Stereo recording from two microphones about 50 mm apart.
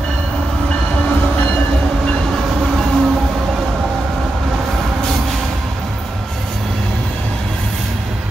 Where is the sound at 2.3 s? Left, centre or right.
Centre.